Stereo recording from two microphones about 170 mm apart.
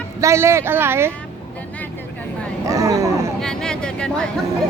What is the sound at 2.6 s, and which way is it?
Speech, 20° right (ahead or behind).